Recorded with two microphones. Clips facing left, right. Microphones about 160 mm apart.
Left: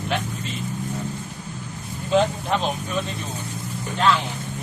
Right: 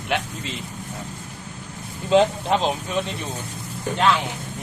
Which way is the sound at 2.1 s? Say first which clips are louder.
Right 3 dB; 25° right (ahead or behind).